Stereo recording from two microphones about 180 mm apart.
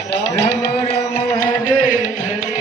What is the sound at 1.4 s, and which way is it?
Music, 50° left (ahead or behind).